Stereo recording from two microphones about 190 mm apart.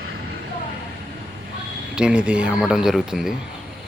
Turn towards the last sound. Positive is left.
turn(degrees=0)  # may be behind; listen again after turning